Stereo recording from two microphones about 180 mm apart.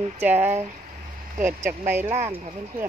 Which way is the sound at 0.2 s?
10° right (ahead or behind).